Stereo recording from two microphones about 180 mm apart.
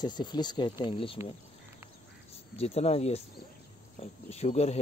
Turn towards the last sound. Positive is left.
turn(degrees=35)  # may be behind; listen again after turning